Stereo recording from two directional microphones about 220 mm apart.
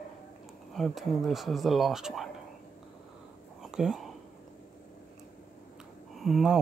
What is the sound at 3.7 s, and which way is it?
Speech, centre (ahead or behind).